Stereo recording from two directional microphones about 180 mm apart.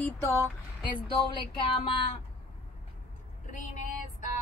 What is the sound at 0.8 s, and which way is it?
Speech, 25° left (ahead or behind).